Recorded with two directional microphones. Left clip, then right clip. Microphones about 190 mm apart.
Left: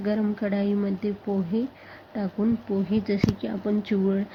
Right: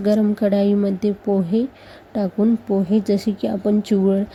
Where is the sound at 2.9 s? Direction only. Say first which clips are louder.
Right 6 dB; 60° right (ahead or behind).